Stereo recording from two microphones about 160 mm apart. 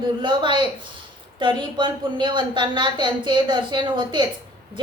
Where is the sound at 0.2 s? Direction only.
30° right (ahead or behind).